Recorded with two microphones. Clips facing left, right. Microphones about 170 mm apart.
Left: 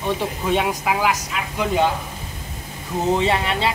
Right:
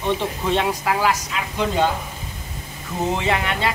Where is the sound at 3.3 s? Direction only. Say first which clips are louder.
Left 1 dB; 30° left (ahead or behind).